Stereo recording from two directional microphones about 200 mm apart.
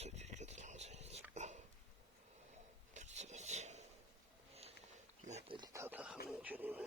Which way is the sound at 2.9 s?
35° right (ahead or behind).